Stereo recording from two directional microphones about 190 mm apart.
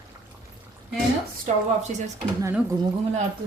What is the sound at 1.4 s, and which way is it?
Speech, 40° right (ahead or behind).